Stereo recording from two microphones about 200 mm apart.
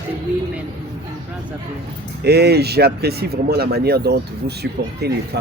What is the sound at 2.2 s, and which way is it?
Speech, 55° right (ahead or behind).